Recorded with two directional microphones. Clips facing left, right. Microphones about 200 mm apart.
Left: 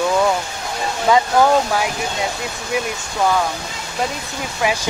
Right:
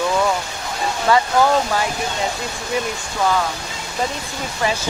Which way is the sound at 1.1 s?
15° left (ahead or behind).